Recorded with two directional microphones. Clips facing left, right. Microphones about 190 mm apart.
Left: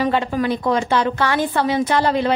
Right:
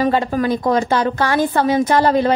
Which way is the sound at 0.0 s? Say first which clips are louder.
Right 2 dB; 40° right (ahead or behind).